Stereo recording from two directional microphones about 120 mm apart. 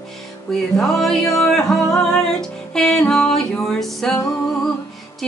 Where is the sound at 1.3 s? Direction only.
5° left (ahead or behind).